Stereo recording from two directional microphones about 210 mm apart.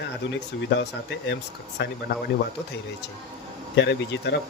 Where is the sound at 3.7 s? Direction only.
55° left (ahead or behind).